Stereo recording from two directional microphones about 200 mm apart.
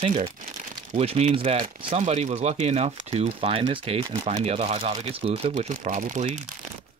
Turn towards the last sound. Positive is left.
turn(degrees=-35)  # may be behind; listen again after turning